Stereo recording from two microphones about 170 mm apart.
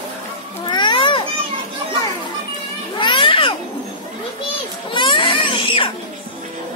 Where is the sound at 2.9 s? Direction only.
30° left (ahead or behind).